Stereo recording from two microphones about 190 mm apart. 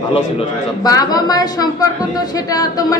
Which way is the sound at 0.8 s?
20° left (ahead or behind).